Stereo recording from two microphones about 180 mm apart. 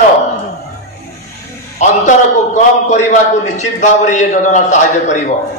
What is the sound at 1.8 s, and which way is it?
A man's voice, 40° left (ahead or behind).